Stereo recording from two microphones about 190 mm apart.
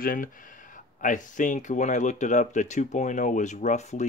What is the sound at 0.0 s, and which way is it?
Speech, 45° left (ahead or behind).